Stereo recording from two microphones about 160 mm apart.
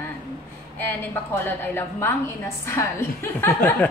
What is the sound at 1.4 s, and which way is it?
A woman's voice, 15° left (ahead or behind).